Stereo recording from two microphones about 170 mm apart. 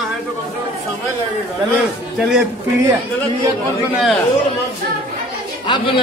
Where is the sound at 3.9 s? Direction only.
Centre (ahead or behind).